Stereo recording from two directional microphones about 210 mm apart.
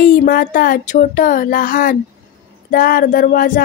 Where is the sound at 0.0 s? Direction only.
40° left (ahead or behind).